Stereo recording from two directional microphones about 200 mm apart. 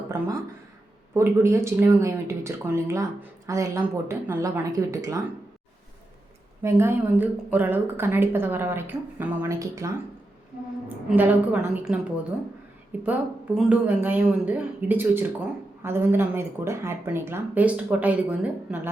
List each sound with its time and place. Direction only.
1.1 s a woman's voice: 15° right (ahead or behind)
6.6 s a woman's voice: 15° right (ahead or behind)
13.0 s a woman's voice: 5° right (ahead or behind)